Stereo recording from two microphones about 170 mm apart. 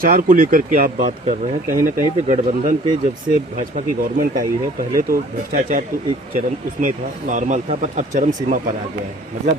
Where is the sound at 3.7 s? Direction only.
55° right (ahead or behind).